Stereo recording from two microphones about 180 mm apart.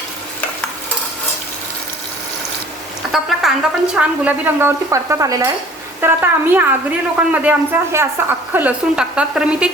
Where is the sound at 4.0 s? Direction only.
10° right (ahead or behind).